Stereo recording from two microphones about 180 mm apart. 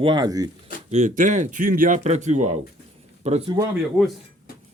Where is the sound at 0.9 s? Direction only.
40° right (ahead or behind).